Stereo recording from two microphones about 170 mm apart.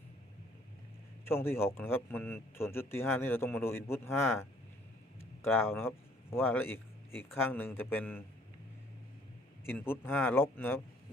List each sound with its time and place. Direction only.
1.2 s a man's voice: 15° left (ahead or behind)
9.6 s a man's voice: 15° left (ahead or behind)